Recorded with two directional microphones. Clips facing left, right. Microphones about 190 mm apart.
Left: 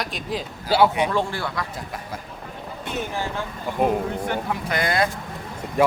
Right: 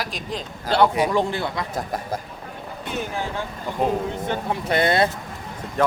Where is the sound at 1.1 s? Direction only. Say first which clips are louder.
Right 2 dB; 20° right (ahead or behind).